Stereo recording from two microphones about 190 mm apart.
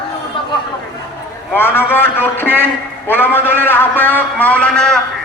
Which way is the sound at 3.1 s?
10° left (ahead or behind).